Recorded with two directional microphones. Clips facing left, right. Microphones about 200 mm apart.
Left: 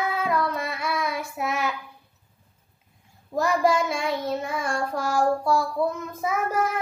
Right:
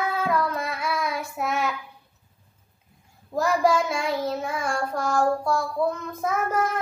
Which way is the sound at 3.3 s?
Centre (ahead or behind).